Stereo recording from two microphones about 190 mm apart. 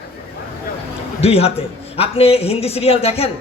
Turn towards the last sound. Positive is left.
turn(degrees=30)  # may be behind; listen again after turning